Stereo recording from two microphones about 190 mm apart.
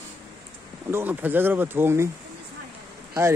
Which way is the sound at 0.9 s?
10° right (ahead or behind).